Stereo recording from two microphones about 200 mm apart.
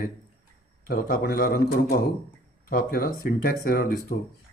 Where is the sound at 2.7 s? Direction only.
45° left (ahead or behind).